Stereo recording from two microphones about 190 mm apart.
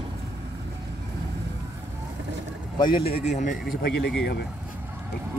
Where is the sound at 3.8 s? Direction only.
60° left (ahead or behind).